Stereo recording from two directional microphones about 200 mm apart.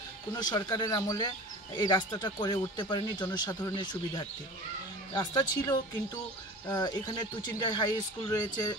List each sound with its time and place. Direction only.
0.3 s speech: 20° left (ahead or behind)